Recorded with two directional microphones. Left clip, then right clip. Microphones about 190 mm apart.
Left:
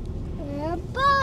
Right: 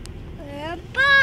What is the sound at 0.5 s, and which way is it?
Speech, 20° right (ahead or behind).